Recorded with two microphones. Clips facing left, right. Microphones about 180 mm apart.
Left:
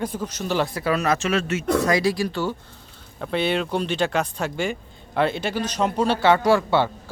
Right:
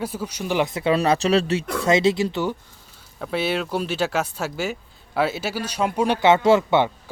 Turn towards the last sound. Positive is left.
turn(degrees=-20)  # may be behind; listen again after turning